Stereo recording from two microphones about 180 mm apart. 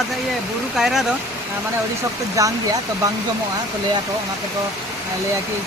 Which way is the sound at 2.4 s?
15° right (ahead or behind).